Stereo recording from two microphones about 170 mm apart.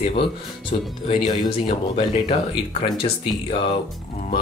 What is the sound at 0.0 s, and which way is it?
Speech, 30° left (ahead or behind).